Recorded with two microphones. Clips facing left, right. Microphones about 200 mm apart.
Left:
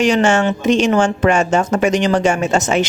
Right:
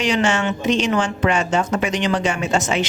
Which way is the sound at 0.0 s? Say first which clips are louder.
Left 6 dB; 45° left (ahead or behind).